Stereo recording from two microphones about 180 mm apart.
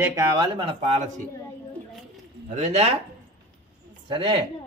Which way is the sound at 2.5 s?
35° right (ahead or behind).